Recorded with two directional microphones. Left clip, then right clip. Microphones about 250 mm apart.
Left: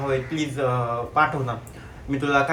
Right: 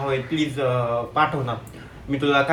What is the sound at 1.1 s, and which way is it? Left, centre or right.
Speech, centre.